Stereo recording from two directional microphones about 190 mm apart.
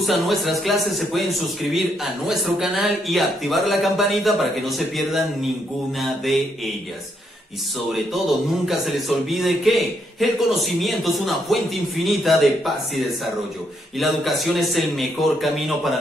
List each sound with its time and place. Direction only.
0.0 s a man's voice: centre (ahead or behind)
7.9 s a man's voice: centre (ahead or behind)